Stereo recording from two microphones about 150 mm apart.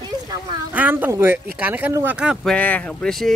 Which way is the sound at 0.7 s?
10° right (ahead or behind).